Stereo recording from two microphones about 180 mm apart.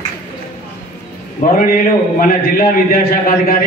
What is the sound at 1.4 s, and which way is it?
A man's voice, 50° left (ahead or behind).